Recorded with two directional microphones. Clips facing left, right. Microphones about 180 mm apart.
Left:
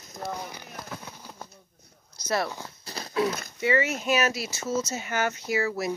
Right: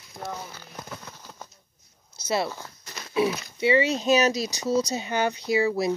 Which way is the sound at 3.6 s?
25° right (ahead or behind).